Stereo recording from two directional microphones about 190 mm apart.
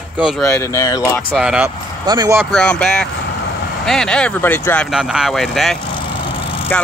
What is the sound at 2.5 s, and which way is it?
Speech, 5° left (ahead or behind).